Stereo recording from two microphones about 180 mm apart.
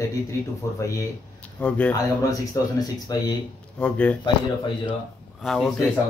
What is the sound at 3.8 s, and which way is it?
Speech, 5° left (ahead or behind).